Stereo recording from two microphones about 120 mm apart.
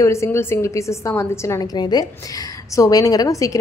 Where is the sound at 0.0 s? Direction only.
25° left (ahead or behind).